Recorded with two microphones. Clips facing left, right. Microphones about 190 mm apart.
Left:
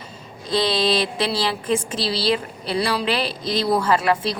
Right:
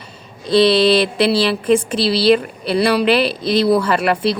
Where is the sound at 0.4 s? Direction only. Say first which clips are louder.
Right 8 dB; 70° right (ahead or behind).